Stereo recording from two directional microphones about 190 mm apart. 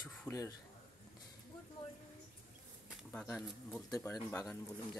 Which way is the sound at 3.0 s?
5° left (ahead or behind).